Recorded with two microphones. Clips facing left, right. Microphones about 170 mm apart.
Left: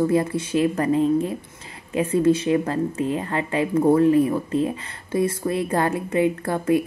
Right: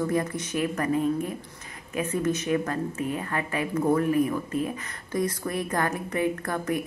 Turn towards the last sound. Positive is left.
turn(degrees=25)  # may be behind; listen again after turning